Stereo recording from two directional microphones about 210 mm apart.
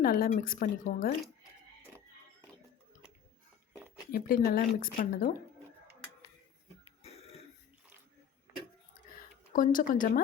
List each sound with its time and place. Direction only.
0.0 s speech: 45° left (ahead or behind)
4.1 s speech: 45° left (ahead or behind)
9.0 s a sound: 40° left (ahead or behind)
9.5 s speech: 40° left (ahead or behind)